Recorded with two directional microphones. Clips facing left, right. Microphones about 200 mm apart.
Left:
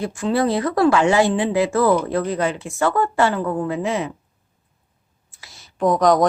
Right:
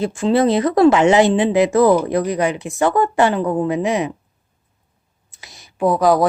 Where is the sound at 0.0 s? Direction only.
25° right (ahead or behind).